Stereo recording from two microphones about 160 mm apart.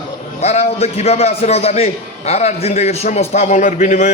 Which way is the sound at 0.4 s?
40° left (ahead or behind).